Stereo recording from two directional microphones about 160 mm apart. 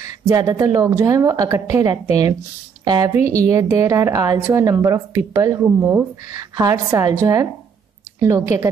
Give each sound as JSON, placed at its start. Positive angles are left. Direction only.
{"t": 0.0, "sound": "a woman's voice", "side_deg": -20}